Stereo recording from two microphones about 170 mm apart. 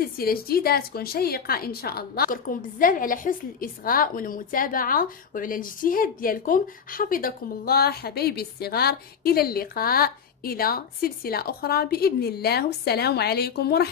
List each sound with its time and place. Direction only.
0.0 s a woman's voice: 60° left (ahead or behind)